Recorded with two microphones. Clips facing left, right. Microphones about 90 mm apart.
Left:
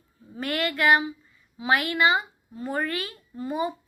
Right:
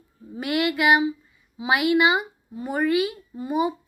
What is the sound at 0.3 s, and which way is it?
Speech, 10° right (ahead or behind).